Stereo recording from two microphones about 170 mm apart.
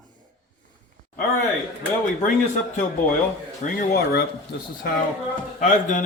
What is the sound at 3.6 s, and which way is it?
Speech, 55° left (ahead or behind).